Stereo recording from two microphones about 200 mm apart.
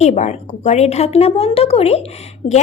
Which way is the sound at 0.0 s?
35° left (ahead or behind).